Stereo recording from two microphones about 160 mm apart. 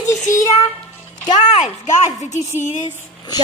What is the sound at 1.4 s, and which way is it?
Speech, 45° left (ahead or behind).